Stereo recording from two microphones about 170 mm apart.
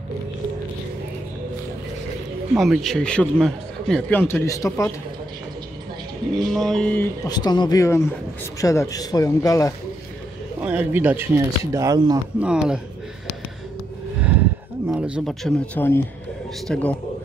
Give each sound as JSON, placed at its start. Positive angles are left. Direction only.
{"t": 2.5, "sound": "speech", "side_deg": 0}
{"t": 6.3, "sound": "speech", "side_deg": 0}
{"t": 7.2, "sound": "a man's voice", "side_deg": 25}
{"t": 10.6, "sound": "speech", "side_deg": -10}
{"t": 12.4, "sound": "speech", "side_deg": -5}
{"t": 14.9, "sound": "speech", "side_deg": -5}